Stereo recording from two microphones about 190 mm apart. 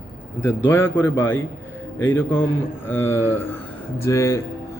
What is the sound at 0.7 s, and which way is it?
A man's voice, 10° left (ahead or behind).